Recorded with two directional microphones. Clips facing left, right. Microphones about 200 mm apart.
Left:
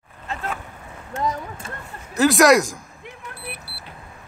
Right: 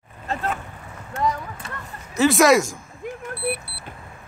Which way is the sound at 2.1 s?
Centre (ahead or behind).